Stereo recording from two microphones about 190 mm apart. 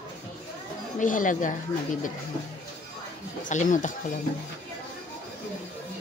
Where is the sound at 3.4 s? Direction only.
40° left (ahead or behind).